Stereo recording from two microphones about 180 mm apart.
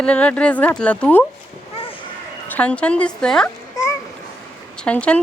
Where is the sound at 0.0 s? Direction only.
5° left (ahead or behind).